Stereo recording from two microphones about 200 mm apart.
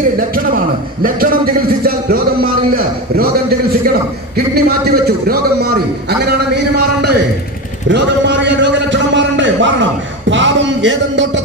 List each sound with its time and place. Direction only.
0.3 s a man's voice: 45° right (ahead or behind)
1.9 s a sound: 45° right (ahead or behind); by 9.8 s 70° right (ahead or behind)
10.3 s speech: 65° right (ahead or behind)